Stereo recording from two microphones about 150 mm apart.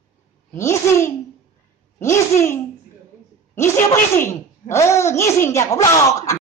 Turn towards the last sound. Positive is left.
turn(degrees=20)  # may be behind; listen again after turning